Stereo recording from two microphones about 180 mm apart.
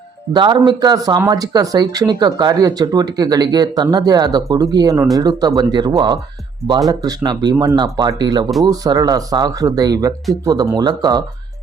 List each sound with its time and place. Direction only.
0.3 s speech: 25° right (ahead or behind)